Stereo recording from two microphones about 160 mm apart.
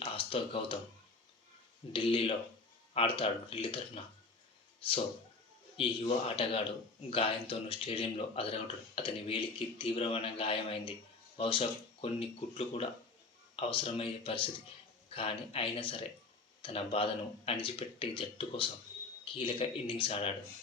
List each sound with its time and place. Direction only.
0.0 s speech: 35° left (ahead or behind)
1.9 s a man's voice: 35° left (ahead or behind)
5.7 s a man's voice: 35° left (ahead or behind)